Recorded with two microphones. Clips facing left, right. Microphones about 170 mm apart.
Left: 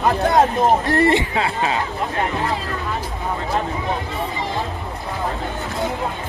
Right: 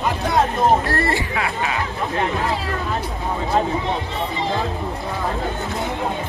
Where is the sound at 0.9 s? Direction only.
20° left (ahead or behind).